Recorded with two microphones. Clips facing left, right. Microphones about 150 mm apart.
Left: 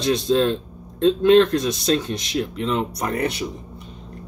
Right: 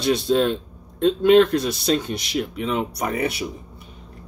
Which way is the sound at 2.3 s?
10° right (ahead or behind).